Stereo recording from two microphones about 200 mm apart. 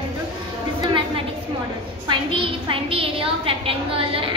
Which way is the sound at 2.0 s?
25° right (ahead or behind).